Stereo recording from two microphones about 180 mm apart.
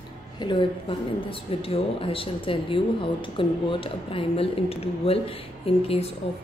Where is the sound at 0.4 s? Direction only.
25° left (ahead or behind).